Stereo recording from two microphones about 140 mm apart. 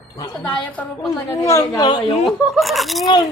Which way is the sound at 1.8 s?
35° left (ahead or behind).